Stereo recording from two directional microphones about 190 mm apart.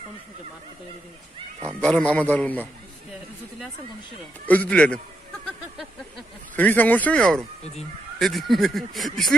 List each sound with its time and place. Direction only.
1.7 s a man's voice: 5° left (ahead or behind)
4.5 s a man's voice: 5° left (ahead or behind)